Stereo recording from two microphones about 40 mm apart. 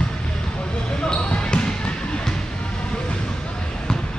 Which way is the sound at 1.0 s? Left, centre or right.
Left.